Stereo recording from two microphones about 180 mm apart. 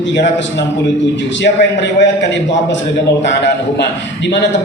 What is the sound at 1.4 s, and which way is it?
Speech, 80° left.